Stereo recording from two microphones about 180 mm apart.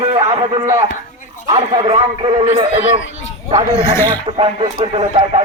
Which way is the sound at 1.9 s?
25° right (ahead or behind).